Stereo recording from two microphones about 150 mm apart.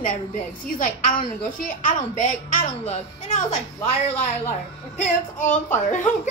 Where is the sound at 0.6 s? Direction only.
60° left (ahead or behind).